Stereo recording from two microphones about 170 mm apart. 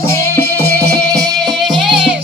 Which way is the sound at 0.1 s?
15° left (ahead or behind).